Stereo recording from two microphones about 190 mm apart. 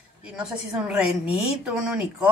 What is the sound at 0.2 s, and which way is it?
A woman's voice, 5° right (ahead or behind).